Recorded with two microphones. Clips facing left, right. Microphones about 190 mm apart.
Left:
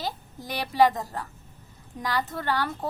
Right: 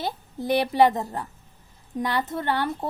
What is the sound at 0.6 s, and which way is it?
A woman's voice, 25° right (ahead or behind).